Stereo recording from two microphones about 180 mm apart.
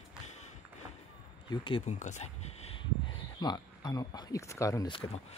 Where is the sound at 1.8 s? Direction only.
40° left (ahead or behind).